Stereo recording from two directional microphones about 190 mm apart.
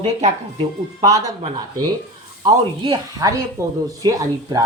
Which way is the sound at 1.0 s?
20° right (ahead or behind).